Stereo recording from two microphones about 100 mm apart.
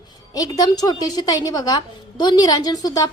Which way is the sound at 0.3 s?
40° left (ahead or behind).